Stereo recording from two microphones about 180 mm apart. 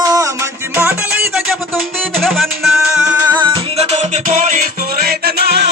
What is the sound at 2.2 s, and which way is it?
Music, centre (ahead or behind).